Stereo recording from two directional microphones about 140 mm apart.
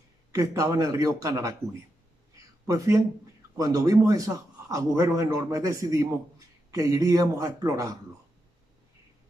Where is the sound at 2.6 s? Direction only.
25° right (ahead or behind).